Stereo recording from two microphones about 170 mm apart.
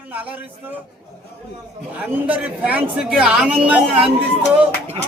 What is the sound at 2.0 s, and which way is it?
A woman's voice, 10° right (ahead or behind).